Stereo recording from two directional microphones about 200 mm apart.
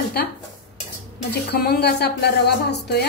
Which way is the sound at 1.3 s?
55° left (ahead or behind).